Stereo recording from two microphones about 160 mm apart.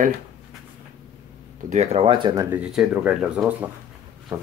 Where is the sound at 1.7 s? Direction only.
40° right (ahead or behind).